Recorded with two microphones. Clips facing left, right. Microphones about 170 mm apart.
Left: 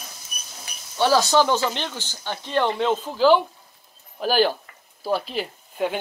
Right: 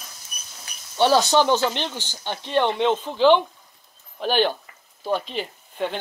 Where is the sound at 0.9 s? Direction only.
20° right (ahead or behind).